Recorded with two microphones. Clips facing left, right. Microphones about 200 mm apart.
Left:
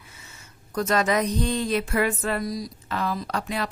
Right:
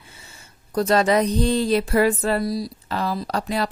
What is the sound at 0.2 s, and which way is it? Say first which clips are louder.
Speech: right 1 dB; 30° right (ahead or behind).